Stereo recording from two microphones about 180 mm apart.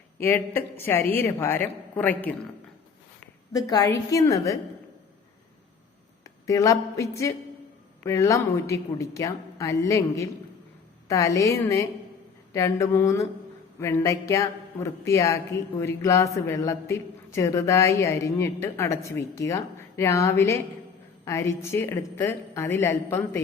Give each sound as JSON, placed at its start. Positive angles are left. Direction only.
{"t": 0.2, "sound": "a woman's voice", "side_deg": 10}
{"t": 3.5, "sound": "a woman's voice", "side_deg": 20}
{"t": 6.2, "sound": "a woman's voice", "side_deg": 15}